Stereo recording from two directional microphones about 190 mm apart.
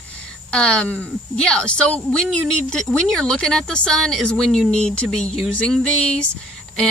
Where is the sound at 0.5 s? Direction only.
5° left (ahead or behind).